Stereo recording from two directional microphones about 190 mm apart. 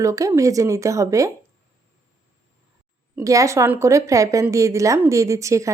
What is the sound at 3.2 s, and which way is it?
Speech, 15° right (ahead or behind).